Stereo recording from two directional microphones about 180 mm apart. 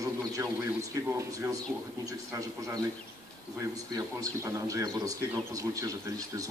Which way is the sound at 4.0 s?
20° right (ahead or behind).